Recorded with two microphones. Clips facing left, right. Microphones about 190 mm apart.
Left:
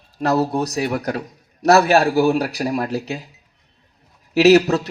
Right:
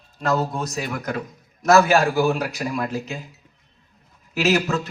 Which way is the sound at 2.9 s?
70° left (ahead or behind).